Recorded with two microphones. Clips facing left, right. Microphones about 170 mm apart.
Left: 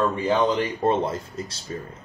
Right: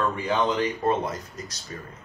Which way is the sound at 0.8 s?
30° left (ahead or behind).